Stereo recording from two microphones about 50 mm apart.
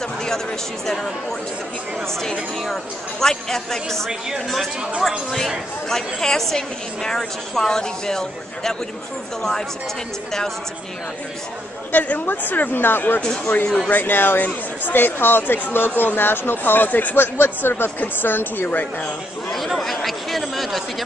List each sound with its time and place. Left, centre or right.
0.0 s a woman's voice: centre
2.0 s a woman's voice: centre
11.9 s speech: left
19.5 s speech: centre